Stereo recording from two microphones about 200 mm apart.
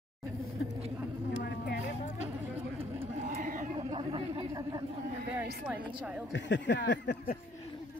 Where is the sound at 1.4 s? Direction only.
55° left (ahead or behind).